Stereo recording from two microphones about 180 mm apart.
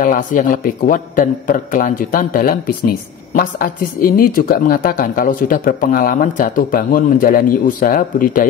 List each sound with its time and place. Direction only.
0.0 s a man's voice: 45° left (ahead or behind)